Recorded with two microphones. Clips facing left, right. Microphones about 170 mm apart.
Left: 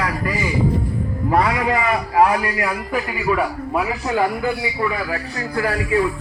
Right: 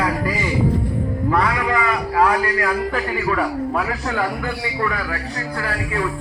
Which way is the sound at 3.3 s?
5° left (ahead or behind).